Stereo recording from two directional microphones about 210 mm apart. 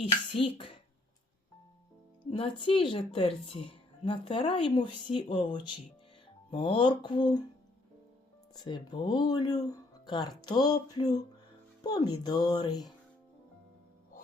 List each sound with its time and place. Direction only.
0.4 s speech: 25° left (ahead or behind)
2.3 s speech: 25° left (ahead or behind)
8.5 s speech: 20° left (ahead or behind)